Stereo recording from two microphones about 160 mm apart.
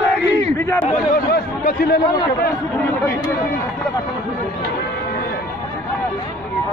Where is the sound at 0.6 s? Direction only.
15° left (ahead or behind).